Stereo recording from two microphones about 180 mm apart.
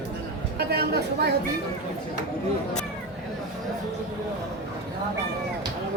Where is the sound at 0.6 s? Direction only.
60° right (ahead or behind).